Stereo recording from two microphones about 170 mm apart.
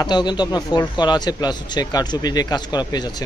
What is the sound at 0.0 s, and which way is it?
A man's voice, 25° left (ahead or behind).